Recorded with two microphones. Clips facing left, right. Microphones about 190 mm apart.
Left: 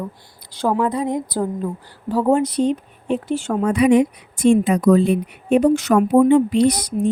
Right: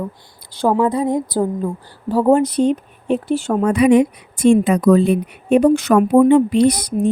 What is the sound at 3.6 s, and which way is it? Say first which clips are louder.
A woman's voice: right 2 dB; 60° right (ahead or behind).